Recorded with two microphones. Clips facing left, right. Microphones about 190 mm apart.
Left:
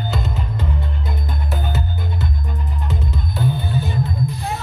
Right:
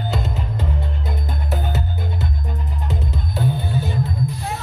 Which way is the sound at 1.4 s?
40° right (ahead or behind).